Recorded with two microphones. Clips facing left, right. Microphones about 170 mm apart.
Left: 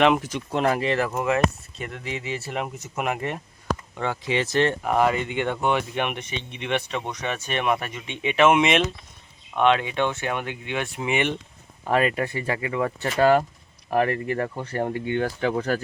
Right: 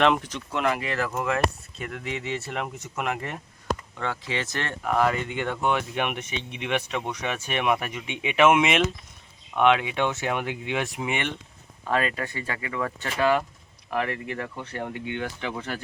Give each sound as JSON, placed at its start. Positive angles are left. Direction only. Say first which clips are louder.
{"t": 0.0, "sound": "speech", "louder": "left 2 dB", "side_deg": 5}
{"t": 0.5, "sound": "speech", "louder": "left 4 dB", "side_deg": 35}
{"t": 1.8, "sound": "speech", "louder": "even", "side_deg": 0}
{"t": 3.9, "sound": "speech", "louder": "left 5 dB", "side_deg": 15}
{"t": 5.1, "sound": "speech", "louder": "left 3 dB", "side_deg": 0}
{"t": 11.0, "sound": "speech", "louder": "left 4 dB", "side_deg": 5}
{"t": 11.9, "sound": "speech", "louder": "left 4 dB", "side_deg": 25}